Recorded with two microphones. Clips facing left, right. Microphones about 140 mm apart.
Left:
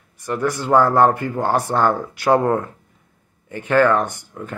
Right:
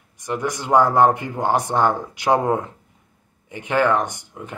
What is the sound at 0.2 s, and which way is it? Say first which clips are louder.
Speech: left 3 dB; 15° right (ahead or behind).